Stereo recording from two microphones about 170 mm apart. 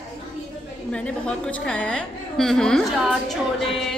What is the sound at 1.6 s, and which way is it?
A woman's voice, 5° left (ahead or behind).